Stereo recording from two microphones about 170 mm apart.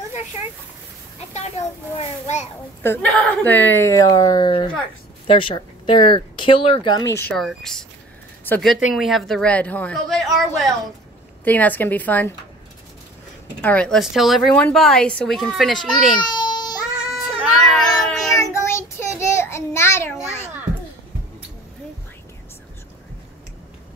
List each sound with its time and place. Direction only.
2.0 s a child's voice: 40° left (ahead or behind)
2.8 s a woman's voice: 10° left (ahead or behind); by 7.1 s 25° left (ahead or behind)
7.2 s a woman's voice: centre (ahead or behind)
13.6 s speech: 5° left (ahead or behind)
16.2 s baby cry: 25° left (ahead or behind)
16.9 s child singing: 5° right (ahead or behind)
17.6 s cat: centre (ahead or behind)
18.3 s child singing: 15° left (ahead or behind)
20.2 s a sound: 15° left (ahead or behind)